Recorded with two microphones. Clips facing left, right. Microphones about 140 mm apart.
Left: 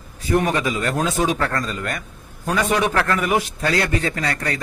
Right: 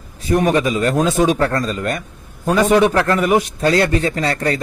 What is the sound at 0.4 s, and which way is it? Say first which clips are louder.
A man's voice: right 7 dB; 25° right (ahead or behind).